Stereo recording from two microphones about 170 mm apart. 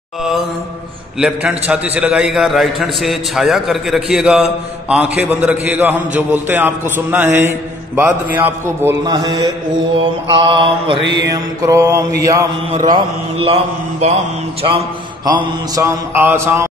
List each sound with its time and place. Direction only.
0.2 s mantra: centre (ahead or behind)
1.2 s a man's voice: 5° right (ahead or behind)
9.0 s a man's voice: 25° right (ahead or behind)
11.0 s mantra: 90° right
11.3 s a man's voice: 15° right (ahead or behind)
15.2 s a man's voice: 20° right (ahead or behind)